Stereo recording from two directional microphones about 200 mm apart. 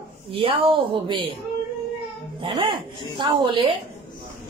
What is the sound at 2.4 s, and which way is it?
A woman's voice, 25° right (ahead or behind).